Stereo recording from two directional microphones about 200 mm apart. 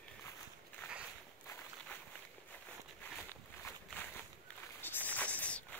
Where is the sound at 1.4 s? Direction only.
15° left (ahead or behind).